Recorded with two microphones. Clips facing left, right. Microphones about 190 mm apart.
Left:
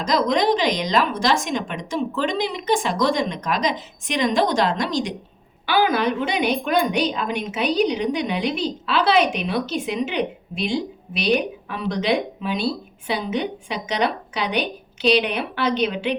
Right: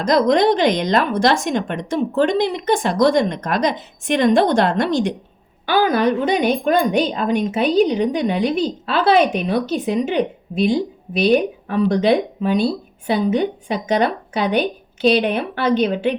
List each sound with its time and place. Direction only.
0.0 s a woman's voice: 55° right (ahead or behind)
5.8 s a woman's voice: 45° right (ahead or behind)